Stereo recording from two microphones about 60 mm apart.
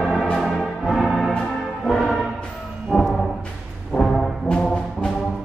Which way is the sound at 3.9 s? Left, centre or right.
Centre.